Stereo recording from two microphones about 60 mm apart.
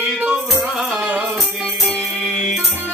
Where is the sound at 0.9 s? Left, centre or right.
Right.